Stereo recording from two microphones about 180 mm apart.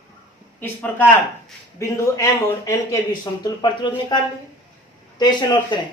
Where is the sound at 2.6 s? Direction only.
20° left (ahead or behind).